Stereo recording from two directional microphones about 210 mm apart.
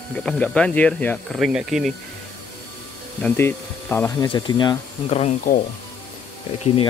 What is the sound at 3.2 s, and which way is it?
Speech, 10° left (ahead or behind).